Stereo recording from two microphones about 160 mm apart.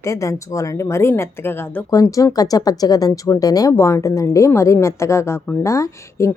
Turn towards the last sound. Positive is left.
turn(degrees=20)  # may be behind; listen again after turning